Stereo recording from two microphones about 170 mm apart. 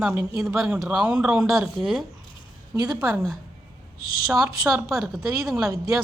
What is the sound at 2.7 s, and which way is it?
Speech, 20° right (ahead or behind).